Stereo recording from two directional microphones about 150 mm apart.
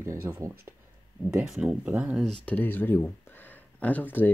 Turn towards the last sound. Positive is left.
turn(degrees=10)  # may be behind; listen again after turning